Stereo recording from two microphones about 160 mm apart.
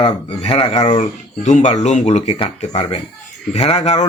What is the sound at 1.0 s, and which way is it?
Speech, 45° left (ahead or behind).